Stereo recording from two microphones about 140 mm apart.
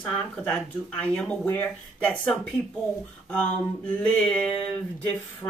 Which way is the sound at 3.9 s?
10° left (ahead or behind).